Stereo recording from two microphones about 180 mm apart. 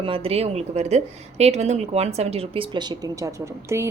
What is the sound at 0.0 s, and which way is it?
A woman's voice, 30° right (ahead or behind).